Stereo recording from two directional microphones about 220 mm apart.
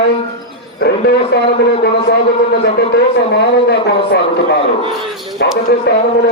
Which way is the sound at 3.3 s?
45° left (ahead or behind).